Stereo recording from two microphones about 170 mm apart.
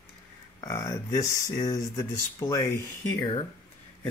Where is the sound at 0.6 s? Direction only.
20° left (ahead or behind).